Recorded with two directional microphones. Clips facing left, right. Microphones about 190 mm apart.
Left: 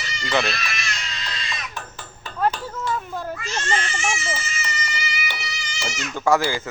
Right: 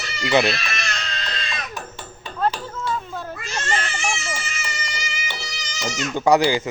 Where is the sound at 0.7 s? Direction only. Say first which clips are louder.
Right 3 dB; 60° right (ahead or behind).